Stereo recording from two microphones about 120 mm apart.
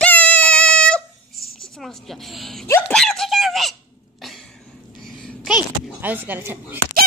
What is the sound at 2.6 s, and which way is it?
Speech, 20° left (ahead or behind).